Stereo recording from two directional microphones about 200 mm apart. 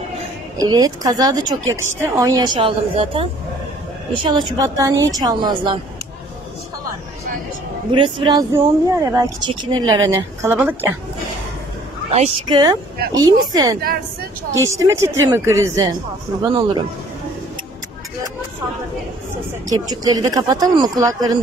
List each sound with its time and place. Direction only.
0.6 s a woman's voice: 20° right (ahead or behind)
7.9 s a woman's voice: 25° right (ahead or behind); by 11.0 s 10° right (ahead or behind)
12.1 s a woman's voice: 30° right (ahead or behind); by 15.9 s 15° right (ahead or behind)
19.7 s a woman's voice: 20° right (ahead or behind)